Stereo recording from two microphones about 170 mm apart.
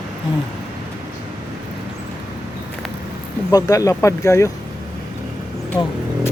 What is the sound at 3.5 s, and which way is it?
Speech, 20° left (ahead or behind).